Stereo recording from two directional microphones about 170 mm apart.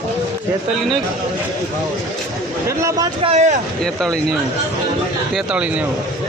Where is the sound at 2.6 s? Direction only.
20° right (ahead or behind).